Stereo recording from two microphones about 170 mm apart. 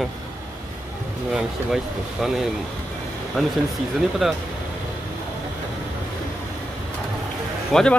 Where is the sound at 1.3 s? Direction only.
5° right (ahead or behind).